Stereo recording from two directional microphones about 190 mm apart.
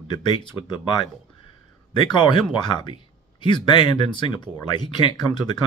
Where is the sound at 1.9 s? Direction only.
25° left (ahead or behind).